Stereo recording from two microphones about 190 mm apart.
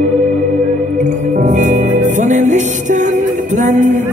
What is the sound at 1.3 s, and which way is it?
Music, 40° right (ahead or behind).